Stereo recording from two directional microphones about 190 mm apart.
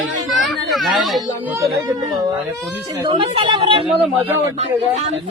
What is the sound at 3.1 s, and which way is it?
Speech, 25° right (ahead or behind).